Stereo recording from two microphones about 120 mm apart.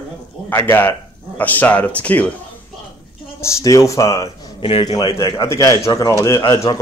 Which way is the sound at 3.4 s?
25° left (ahead or behind).